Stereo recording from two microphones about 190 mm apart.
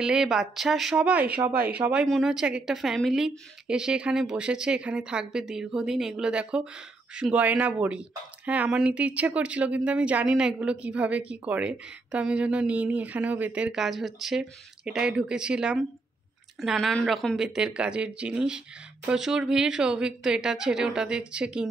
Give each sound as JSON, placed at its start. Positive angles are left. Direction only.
{"t": 0.0, "sound": "speech", "side_deg": -5}